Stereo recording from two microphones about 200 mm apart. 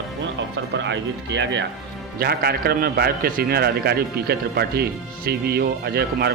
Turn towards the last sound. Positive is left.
turn(degrees=-50)  # may be behind; listen again after turning